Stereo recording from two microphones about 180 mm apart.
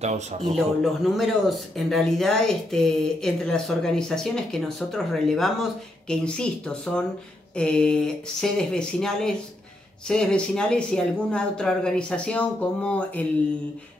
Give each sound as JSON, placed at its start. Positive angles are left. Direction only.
{"t": 0.0, "sound": "speech", "side_deg": -40}
{"t": 1.1, "sound": "speech", "side_deg": 0}